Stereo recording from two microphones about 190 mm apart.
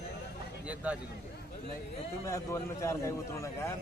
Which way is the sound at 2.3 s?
15° left (ahead or behind).